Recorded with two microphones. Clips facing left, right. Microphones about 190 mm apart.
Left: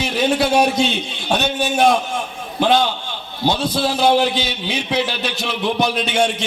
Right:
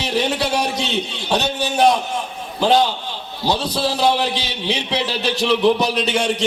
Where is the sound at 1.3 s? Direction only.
35° right (ahead or behind).